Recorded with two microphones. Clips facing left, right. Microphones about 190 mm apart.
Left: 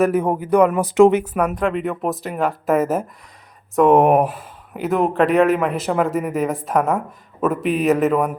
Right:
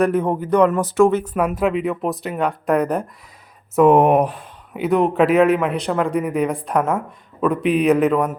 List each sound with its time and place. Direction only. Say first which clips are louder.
0.0 s speech: even; 10° left (ahead or behind)
1.4 s speech: right 1 dB; 5° right (ahead or behind)